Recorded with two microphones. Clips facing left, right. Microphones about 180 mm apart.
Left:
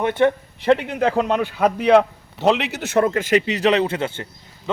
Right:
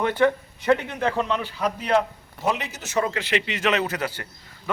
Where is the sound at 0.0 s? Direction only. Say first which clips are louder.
Left 3 dB; 25° left (ahead or behind).